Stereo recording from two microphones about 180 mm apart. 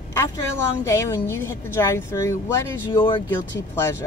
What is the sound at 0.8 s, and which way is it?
Speech, 15° left (ahead or behind).